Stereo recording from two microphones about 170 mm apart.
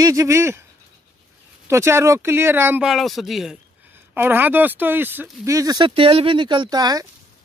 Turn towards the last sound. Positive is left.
turn(degrees=-25)  # may be behind; listen again after turning